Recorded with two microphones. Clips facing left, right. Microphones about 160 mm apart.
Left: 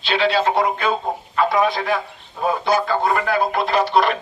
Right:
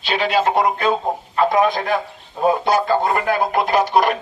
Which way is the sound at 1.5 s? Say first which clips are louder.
Right 2 dB; 45° right (ahead or behind).